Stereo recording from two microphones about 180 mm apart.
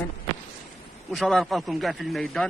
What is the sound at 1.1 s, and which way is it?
A man's voice, centre (ahead or behind).